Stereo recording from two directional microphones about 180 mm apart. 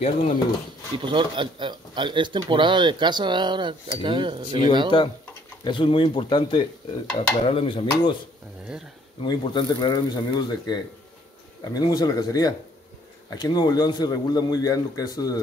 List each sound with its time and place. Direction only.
0.0 s speech: 45° left (ahead or behind)
0.9 s speech: 25° right (ahead or behind)
4.9 s a man's voice: 25° left (ahead or behind)
9.2 s a man's voice: 25° left (ahead or behind)